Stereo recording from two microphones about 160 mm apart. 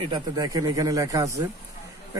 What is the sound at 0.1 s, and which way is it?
A man's voice, 25° right (ahead or behind).